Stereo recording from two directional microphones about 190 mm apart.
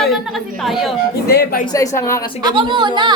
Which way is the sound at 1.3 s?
55° left (ahead or behind).